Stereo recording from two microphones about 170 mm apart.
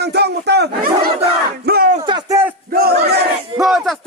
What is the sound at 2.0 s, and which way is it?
Speech, 25° right (ahead or behind).